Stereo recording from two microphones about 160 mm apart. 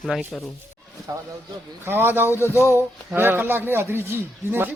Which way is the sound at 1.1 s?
20° right (ahead or behind).